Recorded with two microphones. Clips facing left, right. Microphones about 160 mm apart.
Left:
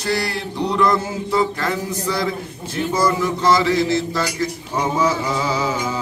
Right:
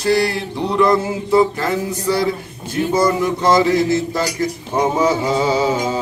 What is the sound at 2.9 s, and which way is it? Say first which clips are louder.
Speech: right 3 dB; 25° right (ahead or behind).